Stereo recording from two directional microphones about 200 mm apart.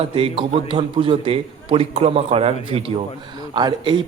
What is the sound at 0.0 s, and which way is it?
A man's voice, 25° right (ahead or behind).